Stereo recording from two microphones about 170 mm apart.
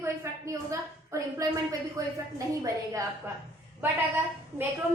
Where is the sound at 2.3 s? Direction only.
20° right (ahead or behind).